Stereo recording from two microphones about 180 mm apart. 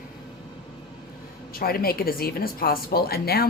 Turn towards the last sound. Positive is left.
turn(degrees=60)  # may be behind; listen again after turning